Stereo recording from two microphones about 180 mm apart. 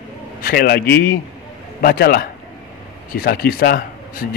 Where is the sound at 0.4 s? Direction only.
55° left (ahead or behind).